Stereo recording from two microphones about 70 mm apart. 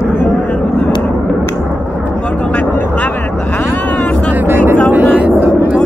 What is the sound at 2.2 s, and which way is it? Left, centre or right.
Vehicle, centre.